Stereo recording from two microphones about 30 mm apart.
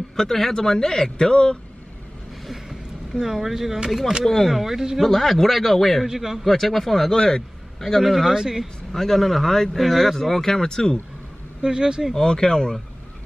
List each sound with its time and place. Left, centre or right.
0.1 s a man's voice: centre; by 1.6 s left
2.7 s a sound: centre
3.4 s speech: centre
4.2 s speech: centre
4.5 s a man's voice: centre
5.0 s a man's voice: centre
7.2 s a man's voice: left
8.0 s a man's voice: centre
8.3 s speech: centre
8.9 s speech: centre
11.6 s speech: right
12.2 s a man's voice: left